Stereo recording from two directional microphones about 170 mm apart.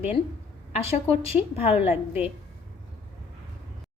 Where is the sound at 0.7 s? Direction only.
35° left (ahead or behind).